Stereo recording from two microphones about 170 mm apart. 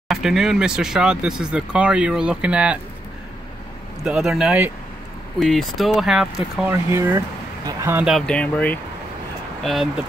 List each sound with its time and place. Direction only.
0.1 s speech: centre (ahead or behind)
4.0 s speech: centre (ahead or behind)
6.7 s speech: 15° right (ahead or behind)
8.0 s speech: centre (ahead or behind)